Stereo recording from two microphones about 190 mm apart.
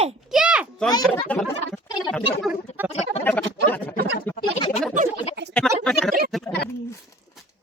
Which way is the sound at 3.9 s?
60° right (ahead or behind).